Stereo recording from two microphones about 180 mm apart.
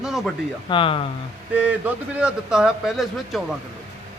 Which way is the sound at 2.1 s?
5° right (ahead or behind).